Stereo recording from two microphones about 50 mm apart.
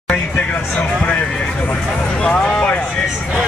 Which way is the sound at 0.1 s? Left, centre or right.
Left.